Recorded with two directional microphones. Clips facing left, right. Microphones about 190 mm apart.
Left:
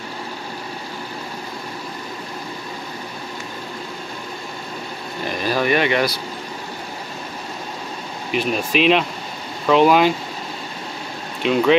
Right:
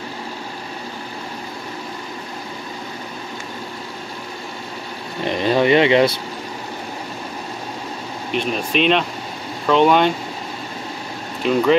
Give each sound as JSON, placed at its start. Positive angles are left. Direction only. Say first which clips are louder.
{"t": 5.2, "sound": "speech", "louder": "right 4 dB", "side_deg": -25}
{"t": 8.3, "sound": "speech", "louder": "left 1 dB", "side_deg": 5}
{"t": 11.4, "sound": "speech", "louder": "even", "side_deg": 0}